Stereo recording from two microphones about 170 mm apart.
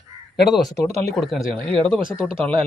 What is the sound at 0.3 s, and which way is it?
Speech, centre (ahead or behind).